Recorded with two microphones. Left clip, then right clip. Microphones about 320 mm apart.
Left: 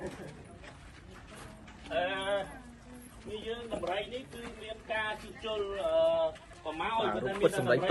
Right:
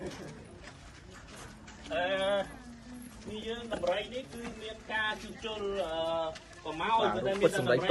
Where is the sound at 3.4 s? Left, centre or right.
Centre.